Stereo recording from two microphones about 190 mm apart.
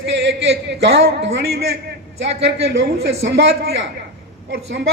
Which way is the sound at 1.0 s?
75° right (ahead or behind).